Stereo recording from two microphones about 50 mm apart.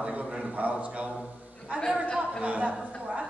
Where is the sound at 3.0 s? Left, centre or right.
Centre.